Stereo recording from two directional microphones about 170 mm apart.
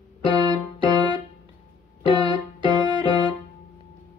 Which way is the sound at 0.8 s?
25° right (ahead or behind).